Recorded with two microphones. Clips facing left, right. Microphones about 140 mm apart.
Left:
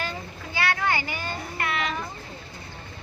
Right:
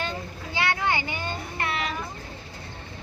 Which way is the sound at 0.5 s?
20° right (ahead or behind).